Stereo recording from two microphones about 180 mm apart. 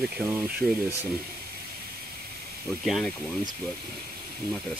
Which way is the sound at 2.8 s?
Centre (ahead or behind).